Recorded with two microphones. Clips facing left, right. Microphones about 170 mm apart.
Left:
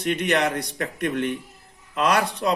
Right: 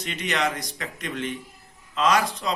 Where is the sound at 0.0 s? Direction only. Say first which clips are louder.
Left 5 dB; 55° left (ahead or behind).